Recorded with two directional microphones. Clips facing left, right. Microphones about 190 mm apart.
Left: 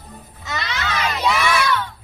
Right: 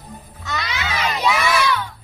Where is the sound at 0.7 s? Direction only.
10° right (ahead or behind).